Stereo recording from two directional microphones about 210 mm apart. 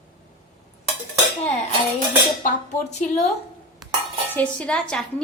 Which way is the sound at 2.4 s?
35° left (ahead or behind).